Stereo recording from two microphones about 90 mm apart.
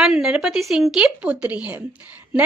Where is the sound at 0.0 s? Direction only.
5° right (ahead or behind).